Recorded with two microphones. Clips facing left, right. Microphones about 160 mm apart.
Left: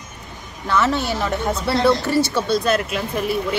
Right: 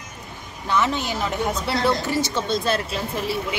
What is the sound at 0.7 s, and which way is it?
Speech, 15° right (ahead or behind).